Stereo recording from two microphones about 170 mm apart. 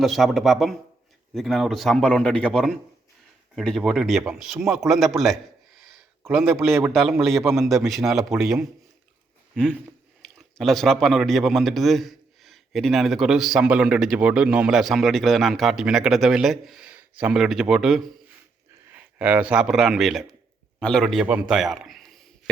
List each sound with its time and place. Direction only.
0.0 s a man's voice: centre (ahead or behind)
6.3 s a man's voice: 10° right (ahead or behind)
6.6 s a man's voice: centre (ahead or behind)
10.2 s a man's voice: centre (ahead or behind)